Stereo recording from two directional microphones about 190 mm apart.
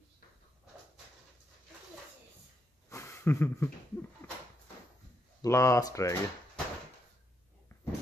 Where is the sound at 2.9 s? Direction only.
15° left (ahead or behind).